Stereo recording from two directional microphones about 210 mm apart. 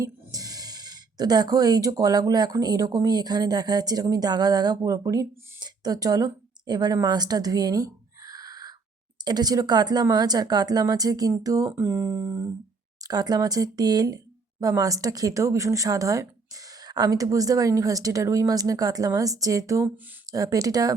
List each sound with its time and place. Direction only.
0.0 s speech: 15° right (ahead or behind)